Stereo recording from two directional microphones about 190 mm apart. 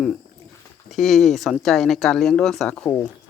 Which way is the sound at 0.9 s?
Centre (ahead or behind).